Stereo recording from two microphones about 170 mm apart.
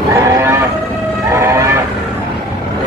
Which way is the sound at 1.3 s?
15° right (ahead or behind).